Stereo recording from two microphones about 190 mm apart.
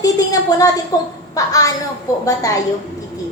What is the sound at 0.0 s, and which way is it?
A woman's voice, 20° left (ahead or behind).